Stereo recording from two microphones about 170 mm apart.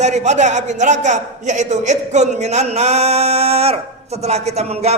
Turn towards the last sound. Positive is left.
turn(degrees=-40)  # may be behind; listen again after turning